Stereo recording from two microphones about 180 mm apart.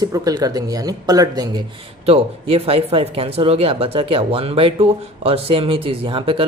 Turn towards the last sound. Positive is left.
turn(degrees=-30)  # may be behind; listen again after turning